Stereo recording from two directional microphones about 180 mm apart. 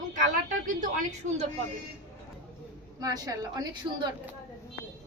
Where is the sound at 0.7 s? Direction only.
45° right (ahead or behind).